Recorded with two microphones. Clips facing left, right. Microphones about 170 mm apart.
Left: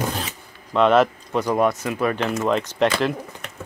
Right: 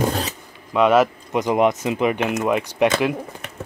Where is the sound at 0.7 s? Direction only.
5° right (ahead or behind).